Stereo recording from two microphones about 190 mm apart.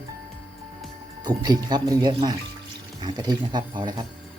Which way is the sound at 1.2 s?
20° right (ahead or behind).